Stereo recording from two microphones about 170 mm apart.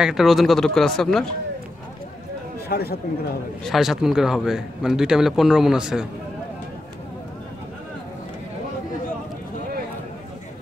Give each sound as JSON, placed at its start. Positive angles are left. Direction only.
{"t": 0.0, "sound": "speech", "side_deg": 0}
{"t": 2.7, "sound": "speech", "side_deg": 65}
{"t": 3.6, "sound": "speech", "side_deg": 0}